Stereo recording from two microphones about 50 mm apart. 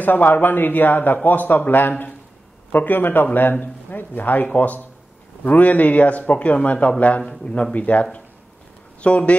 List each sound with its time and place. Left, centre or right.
0.0 s speech: left